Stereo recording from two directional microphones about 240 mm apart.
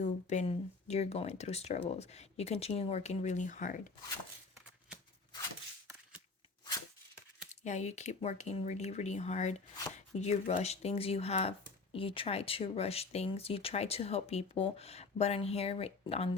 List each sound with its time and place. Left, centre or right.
0.0 s speech: left
7.6 s speech: left